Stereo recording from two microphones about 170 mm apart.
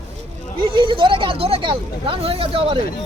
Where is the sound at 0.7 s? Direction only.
30° right (ahead or behind).